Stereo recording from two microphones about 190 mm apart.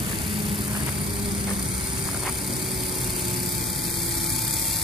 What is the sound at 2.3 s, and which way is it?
Vehicle, centre (ahead or behind).